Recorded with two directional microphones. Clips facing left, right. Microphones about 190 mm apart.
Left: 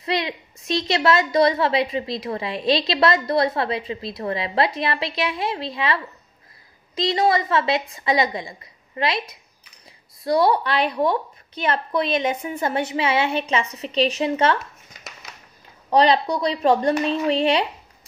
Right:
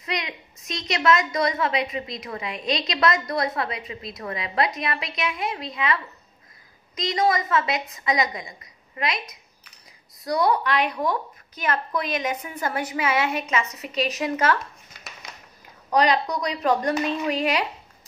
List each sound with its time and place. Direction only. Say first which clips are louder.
0.0 s a woman's voice: left 6 dB; 30° left (ahead or behind)
7.0 s a woman's voice: left 3 dB; 30° left (ahead or behind)
15.9 s a woman's voice: left 4 dB; 30° left (ahead or behind)